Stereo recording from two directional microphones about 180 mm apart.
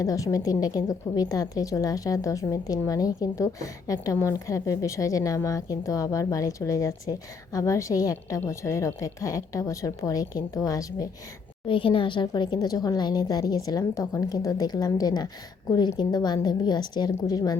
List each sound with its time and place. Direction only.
0.0 s a woman's voice: 20° left (ahead or behind)
11.7 s a woman's voice: 30° left (ahead or behind)